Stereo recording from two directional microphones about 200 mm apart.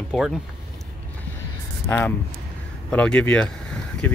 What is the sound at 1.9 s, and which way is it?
Speech, 10° left (ahead or behind).